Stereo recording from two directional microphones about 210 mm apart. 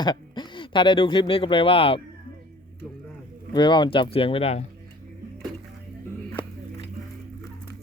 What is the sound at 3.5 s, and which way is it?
Speech, 20° left (ahead or behind).